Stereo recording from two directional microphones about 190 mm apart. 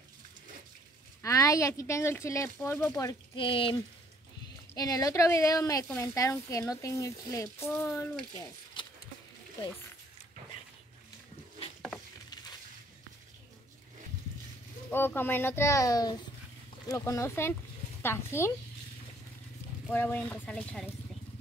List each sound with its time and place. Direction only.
1.2 s speech: 15° left (ahead or behind)
4.7 s speech: 20° left (ahead or behind)
8.8 s a sound: 25° left (ahead or behind)
14.9 s a woman's voice: 10° left (ahead or behind)
19.9 s speech: 10° left (ahead or behind)